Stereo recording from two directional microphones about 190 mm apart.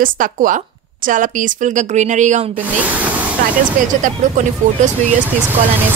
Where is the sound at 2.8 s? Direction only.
10° right (ahead or behind).